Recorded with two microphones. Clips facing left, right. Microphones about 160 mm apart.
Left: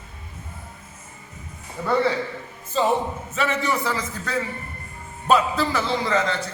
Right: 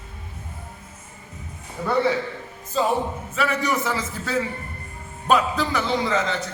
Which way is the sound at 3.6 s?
15° right (ahead or behind).